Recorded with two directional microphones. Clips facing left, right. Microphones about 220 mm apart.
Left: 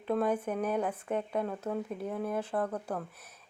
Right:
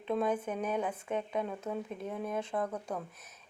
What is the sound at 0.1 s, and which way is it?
Speech, 5° left (ahead or behind).